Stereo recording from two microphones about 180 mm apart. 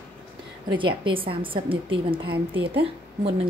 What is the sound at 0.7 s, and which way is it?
A woman's voice, 25° right (ahead or behind).